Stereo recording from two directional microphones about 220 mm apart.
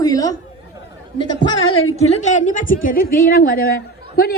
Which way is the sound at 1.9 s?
30° left (ahead or behind).